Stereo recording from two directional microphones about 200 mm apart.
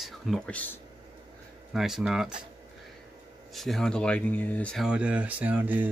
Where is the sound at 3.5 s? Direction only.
Centre (ahead or behind).